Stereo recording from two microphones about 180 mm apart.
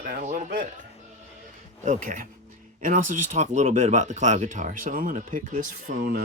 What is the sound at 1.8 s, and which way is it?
Speech, 45° right (ahead or behind).